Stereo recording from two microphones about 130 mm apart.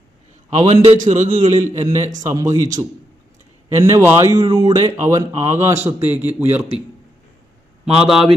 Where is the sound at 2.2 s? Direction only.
25° right (ahead or behind).